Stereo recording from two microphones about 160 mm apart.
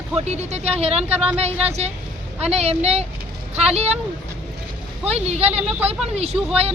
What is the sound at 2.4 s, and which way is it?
Speech, 40° right (ahead or behind).